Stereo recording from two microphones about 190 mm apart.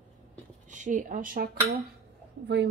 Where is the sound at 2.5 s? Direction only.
70° right (ahead or behind).